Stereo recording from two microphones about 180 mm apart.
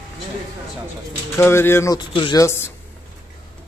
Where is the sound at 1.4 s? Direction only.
15° left (ahead or behind).